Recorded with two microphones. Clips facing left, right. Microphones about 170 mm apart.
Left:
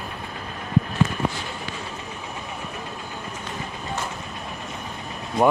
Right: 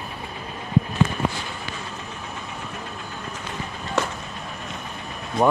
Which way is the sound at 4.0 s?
80° right.